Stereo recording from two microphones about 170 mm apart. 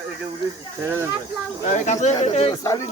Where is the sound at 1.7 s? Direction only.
45° left (ahead or behind).